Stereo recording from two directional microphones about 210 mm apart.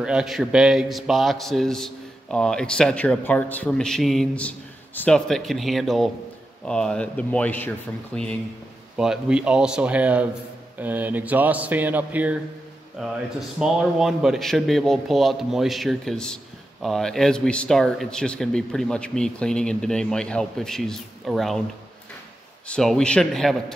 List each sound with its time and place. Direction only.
0.0 s a man's voice: 5° right (ahead or behind)
13.6 s a man's voice: centre (ahead or behind)
22.7 s a man's voice: 5° left (ahead or behind)